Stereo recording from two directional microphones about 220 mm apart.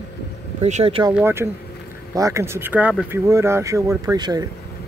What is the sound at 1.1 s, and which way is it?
Speech, 10° right (ahead or behind).